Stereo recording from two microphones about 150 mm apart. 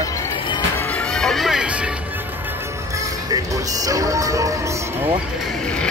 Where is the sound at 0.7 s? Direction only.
5° left (ahead or behind).